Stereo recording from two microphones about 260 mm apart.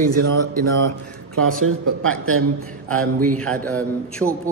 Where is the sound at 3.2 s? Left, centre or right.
Centre.